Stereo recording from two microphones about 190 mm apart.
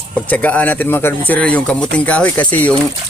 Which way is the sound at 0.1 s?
10° left (ahead or behind).